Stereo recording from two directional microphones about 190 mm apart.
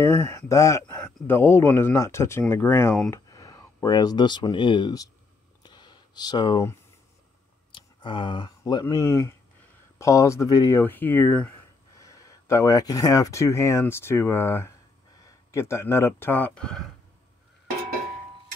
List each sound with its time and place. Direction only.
0.0 s speech: 15° left (ahead or behind)
5.6 s a sound: 20° left (ahead or behind)
7.7 s speech: 25° left (ahead or behind); by 16.8 s 5° left (ahead or behind)